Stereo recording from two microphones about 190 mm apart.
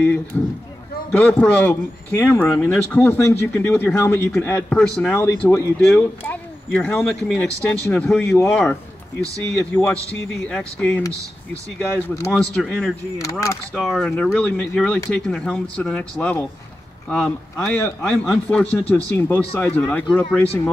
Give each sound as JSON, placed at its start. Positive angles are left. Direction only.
{"t": 0.3, "sound": "speech", "side_deg": 5}
{"t": 12.3, "sound": "speech", "side_deg": 5}
{"t": 13.2, "sound": "speech", "side_deg": 15}
{"t": 13.7, "sound": "speech", "side_deg": -5}